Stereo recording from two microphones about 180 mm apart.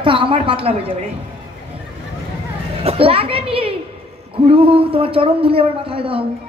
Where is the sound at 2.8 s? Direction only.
30° right (ahead or behind).